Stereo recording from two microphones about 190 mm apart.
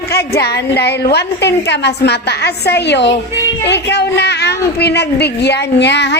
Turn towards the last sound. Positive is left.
turn(degrees=65)  # may be behind; listen again after turning